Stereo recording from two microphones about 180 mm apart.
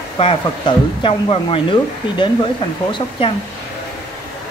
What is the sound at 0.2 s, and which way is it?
Speech, 30° left (ahead or behind).